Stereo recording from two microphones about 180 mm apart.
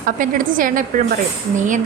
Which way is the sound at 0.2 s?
50° right (ahead or behind).